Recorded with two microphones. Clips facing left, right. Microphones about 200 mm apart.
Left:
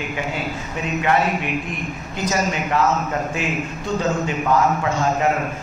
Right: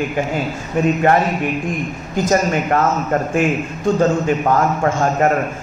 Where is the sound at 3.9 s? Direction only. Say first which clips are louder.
Right 4 dB; 50° right (ahead or behind).